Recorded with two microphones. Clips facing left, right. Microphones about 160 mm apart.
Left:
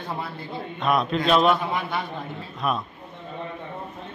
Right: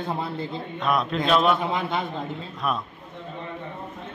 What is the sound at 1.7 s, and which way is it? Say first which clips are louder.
Speech: right 1 dB; 20° right (ahead or behind).